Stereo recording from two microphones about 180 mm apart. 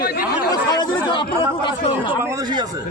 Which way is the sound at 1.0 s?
25° left (ahead or behind).